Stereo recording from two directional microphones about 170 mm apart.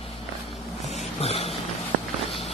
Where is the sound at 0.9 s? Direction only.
35° left (ahead or behind).